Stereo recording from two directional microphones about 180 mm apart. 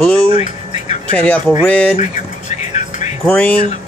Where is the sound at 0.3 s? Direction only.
40° left (ahead or behind).